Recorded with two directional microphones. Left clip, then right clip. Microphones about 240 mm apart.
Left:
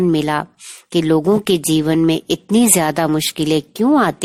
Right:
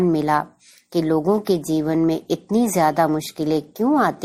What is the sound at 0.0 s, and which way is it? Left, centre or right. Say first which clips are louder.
Speech: left 2 dB; left.